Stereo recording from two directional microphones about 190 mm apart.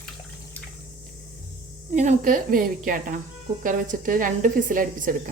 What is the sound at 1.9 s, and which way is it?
Speech, 45° right (ahead or behind).